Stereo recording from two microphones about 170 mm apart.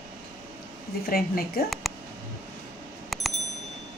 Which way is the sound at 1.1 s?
60° left (ahead or behind).